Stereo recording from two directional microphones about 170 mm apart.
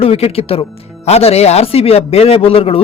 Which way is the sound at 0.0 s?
35° left (ahead or behind).